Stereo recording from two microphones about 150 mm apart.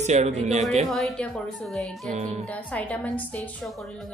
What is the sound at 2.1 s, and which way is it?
Speech, 50° right (ahead or behind).